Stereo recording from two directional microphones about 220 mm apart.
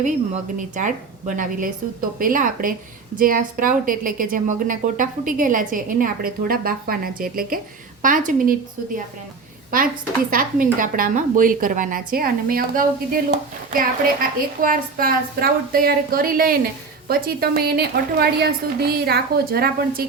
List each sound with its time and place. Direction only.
0.8 s a woman's voice: 35° right (ahead or behind)
9.7 s a woman's voice: 40° right (ahead or behind)